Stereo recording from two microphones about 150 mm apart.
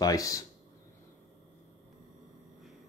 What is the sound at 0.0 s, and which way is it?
Speech, 25° left (ahead or behind).